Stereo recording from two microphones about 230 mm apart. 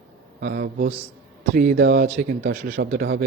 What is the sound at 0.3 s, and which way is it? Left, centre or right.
Speech, right.